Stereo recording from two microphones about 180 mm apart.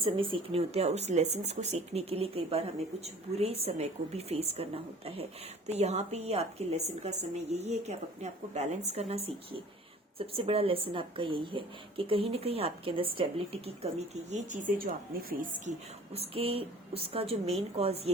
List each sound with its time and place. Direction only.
0.0 s a woman's voice: 30° right (ahead or behind)
14.3 s a woman's voice: 40° right (ahead or behind)
16.1 s a woman's voice: 35° right (ahead or behind)